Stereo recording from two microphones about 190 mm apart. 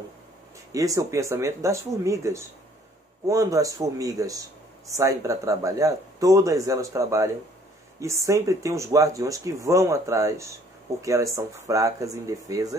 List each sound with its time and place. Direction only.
0.7 s speech: 15° right (ahead or behind)
8.3 s speech: 15° right (ahead or behind)